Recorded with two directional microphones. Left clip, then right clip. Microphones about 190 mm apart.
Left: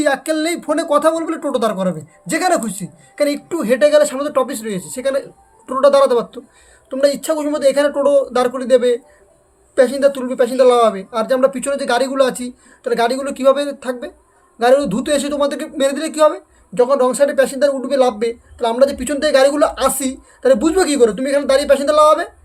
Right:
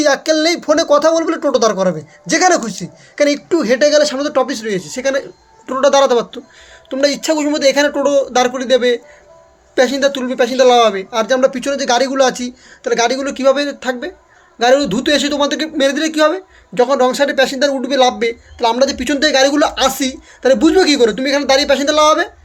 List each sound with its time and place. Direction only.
0.0 s a man's voice: 10° right (ahead or behind)